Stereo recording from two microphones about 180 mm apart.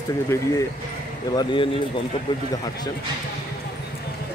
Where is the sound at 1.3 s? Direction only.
25° left (ahead or behind).